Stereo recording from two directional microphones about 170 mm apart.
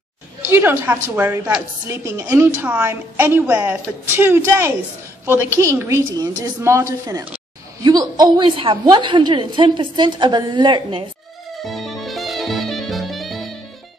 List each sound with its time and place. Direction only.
0.5 s a woman's voice: 10° right (ahead or behind); by 11.1 s 30° right (ahead or behind)
11.6 s music: centre (ahead or behind)